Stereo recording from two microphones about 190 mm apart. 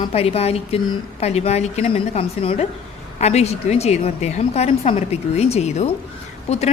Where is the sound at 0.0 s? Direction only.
30° left (ahead or behind).